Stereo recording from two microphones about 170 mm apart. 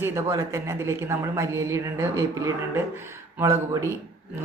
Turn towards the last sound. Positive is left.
turn(degrees=-15)  # may be behind; listen again after turning